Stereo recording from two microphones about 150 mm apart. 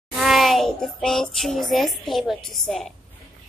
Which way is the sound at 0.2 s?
Centre (ahead or behind).